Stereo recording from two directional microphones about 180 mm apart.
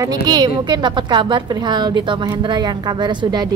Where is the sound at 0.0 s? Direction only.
20° right (ahead or behind).